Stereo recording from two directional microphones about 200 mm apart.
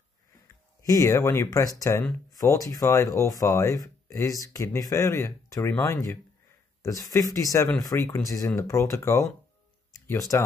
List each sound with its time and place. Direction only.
0.8 s speech: 15° left (ahead or behind)